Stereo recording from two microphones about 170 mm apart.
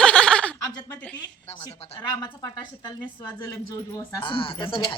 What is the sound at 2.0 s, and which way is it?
Speech, 25° left (ahead or behind).